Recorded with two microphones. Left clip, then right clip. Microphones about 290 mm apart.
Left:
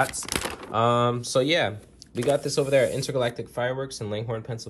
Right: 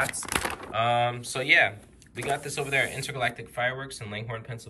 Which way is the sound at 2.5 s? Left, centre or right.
Centre.